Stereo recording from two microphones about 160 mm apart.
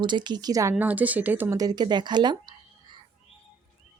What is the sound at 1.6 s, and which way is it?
Speech, 25° right (ahead or behind).